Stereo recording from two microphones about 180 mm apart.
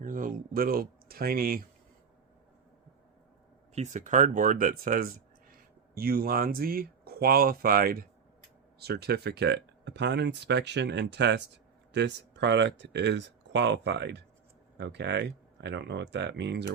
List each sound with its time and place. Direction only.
0.0 s speech: 50° right (ahead or behind)
3.8 s speech: 45° right (ahead or behind); by 16.7 s 70° right (ahead or behind)